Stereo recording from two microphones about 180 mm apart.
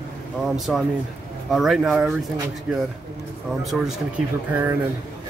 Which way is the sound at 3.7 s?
Centre (ahead or behind).